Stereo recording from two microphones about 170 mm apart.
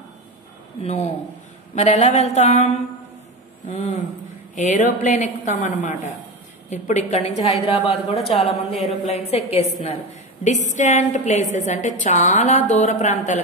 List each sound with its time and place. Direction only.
0.8 s a woman's voice: 40° left (ahead or behind)